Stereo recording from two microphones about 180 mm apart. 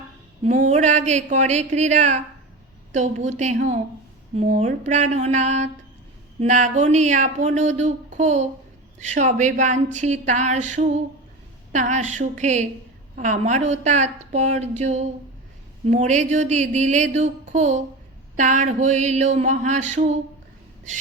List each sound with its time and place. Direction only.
0.4 s speech: 40° right (ahead or behind)